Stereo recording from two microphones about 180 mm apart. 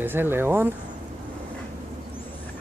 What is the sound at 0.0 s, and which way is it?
Speech, 10° right (ahead or behind).